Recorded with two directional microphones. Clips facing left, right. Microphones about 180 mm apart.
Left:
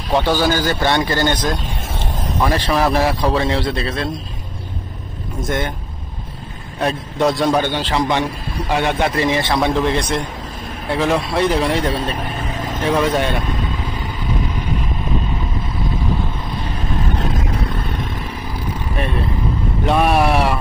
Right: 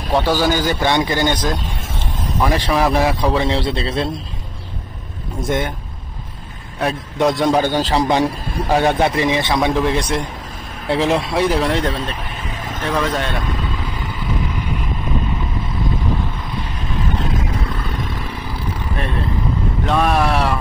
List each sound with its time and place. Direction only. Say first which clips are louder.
0.2 s a man's voice: right 1 dB; 5° right (ahead or behind)
3.4 s a man's voice: even; 25° right (ahead or behind)
6.8 s a man's voice: even; centre (ahead or behind)
7.3 s a man's voice: right 1 dB; 20° right (ahead or behind)
7.6 s a man's voice: right 2 dB; 40° right (ahead or behind)
9.1 s speech: even; 20° right (ahead or behind)
10.9 s a man's voice: right 1 dB; 25° right (ahead or behind)
11.3 s speech: left 1 dB; 10° right (ahead or behind)
12.8 s speech: left 3 dB; 10° left (ahead or behind)
19.9 s speech: left 2 dB; 10° left (ahead or behind)